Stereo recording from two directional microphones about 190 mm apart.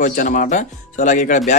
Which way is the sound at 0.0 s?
45° left (ahead or behind).